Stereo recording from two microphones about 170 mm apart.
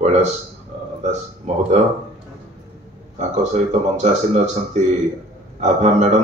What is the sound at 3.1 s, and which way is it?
Speech, 45° right (ahead or behind).